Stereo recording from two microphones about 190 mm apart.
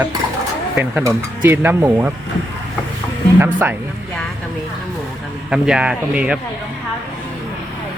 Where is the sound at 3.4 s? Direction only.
10° right (ahead or behind).